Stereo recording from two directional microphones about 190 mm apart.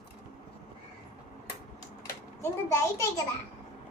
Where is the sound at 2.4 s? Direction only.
15° left (ahead or behind).